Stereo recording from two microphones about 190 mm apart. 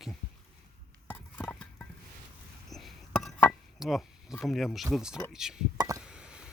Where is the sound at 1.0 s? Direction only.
5° left (ahead or behind).